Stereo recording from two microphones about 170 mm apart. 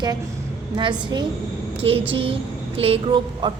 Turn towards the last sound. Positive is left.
turn(degrees=-30)  # may be behind; listen again after turning